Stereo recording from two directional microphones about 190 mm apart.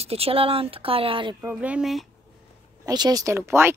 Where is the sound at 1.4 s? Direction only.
10° right (ahead or behind).